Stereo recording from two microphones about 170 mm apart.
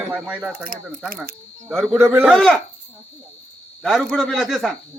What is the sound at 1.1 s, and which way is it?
Speech, 60° right (ahead or behind).